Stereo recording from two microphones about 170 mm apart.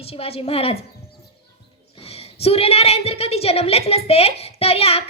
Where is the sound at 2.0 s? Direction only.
35° left (ahead or behind).